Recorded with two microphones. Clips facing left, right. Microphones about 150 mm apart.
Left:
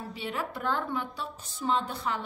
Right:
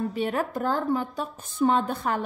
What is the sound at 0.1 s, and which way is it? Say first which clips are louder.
A woman's voice: right 8 dB; 50° right (ahead or behind).